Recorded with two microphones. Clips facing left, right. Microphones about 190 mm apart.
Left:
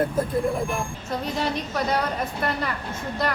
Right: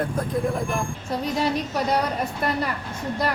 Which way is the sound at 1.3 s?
10° right (ahead or behind).